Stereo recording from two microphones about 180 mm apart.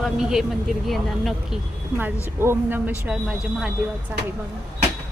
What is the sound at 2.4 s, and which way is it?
Speech, 10° right (ahead or behind).